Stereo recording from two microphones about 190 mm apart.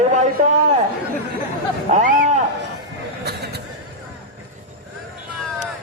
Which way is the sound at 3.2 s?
60° right (ahead or behind).